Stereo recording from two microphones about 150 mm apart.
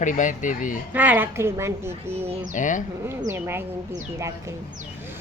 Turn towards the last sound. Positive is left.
turn(degrees=-15)  # may be behind; listen again after turning